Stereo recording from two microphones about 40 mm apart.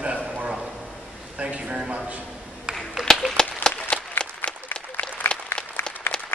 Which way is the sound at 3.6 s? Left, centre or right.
Left.